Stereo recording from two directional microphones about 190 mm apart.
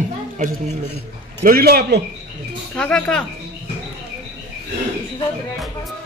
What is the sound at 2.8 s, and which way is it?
Speech, 5° left (ahead or behind).